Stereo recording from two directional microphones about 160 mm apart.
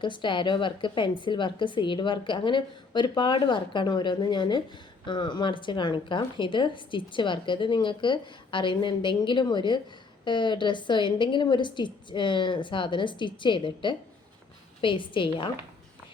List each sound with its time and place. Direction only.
0.0 s a woman's voice: 30° left (ahead or behind)